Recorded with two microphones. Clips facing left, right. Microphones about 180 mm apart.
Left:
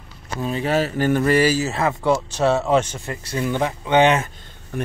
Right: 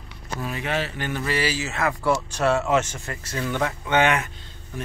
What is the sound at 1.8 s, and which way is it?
Speech, 25° left (ahead or behind).